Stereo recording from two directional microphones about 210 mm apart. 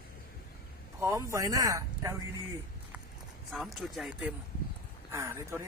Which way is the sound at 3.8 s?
Centre (ahead or behind).